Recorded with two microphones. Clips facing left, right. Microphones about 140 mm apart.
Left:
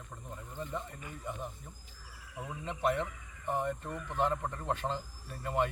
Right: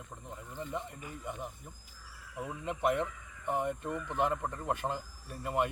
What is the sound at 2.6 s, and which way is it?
A man's voice, 15° right (ahead or behind).